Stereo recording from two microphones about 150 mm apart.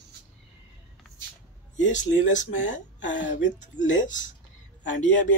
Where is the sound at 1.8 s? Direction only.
55° left (ahead or behind).